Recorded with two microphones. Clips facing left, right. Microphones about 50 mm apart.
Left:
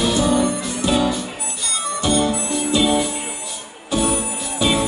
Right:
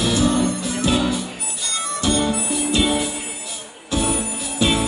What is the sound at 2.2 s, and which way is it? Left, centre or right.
Music, centre.